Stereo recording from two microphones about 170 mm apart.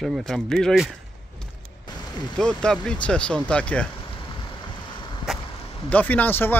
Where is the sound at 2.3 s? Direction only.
5° left (ahead or behind).